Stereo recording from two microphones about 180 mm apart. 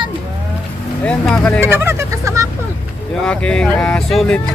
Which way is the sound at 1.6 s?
15° right (ahead or behind).